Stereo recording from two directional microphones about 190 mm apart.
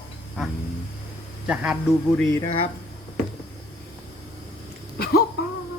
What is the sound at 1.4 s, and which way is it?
Speech, 5° right (ahead or behind).